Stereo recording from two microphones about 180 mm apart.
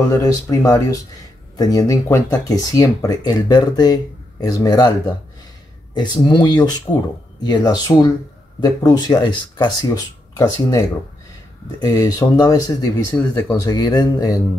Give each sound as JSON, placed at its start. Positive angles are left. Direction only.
{"t": 0.2, "sound": "speech", "side_deg": 20}